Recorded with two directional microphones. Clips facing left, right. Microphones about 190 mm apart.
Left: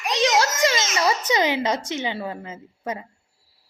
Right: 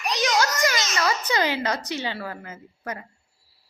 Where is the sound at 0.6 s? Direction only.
25° left (ahead or behind).